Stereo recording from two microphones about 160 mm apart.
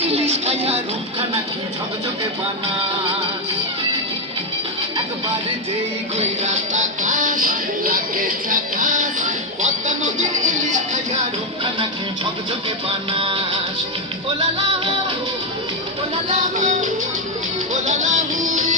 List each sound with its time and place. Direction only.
0.0 s music: 40° right (ahead or behind)
6.1 s music: 45° right (ahead or behind)
11.6 s music: 30° right (ahead or behind)
16.6 s music: 50° right (ahead or behind)